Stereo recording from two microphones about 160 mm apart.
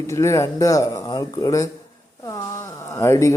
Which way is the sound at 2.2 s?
20° left (ahead or behind).